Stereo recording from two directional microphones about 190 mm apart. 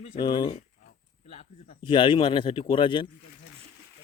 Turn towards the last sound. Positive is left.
turn(degrees=25)  # may be behind; listen again after turning